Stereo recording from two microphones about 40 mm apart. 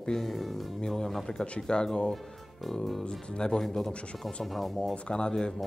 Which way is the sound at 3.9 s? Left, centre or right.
Left.